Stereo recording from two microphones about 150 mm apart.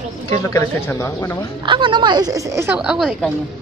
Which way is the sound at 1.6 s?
30° right (ahead or behind).